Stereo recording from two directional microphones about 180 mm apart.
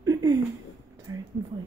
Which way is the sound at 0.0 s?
20° right (ahead or behind).